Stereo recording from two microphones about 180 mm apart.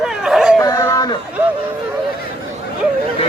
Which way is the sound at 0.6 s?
15° left (ahead or behind).